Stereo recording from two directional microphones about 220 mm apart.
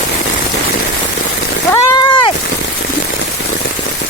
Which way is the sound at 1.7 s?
20° left (ahead or behind).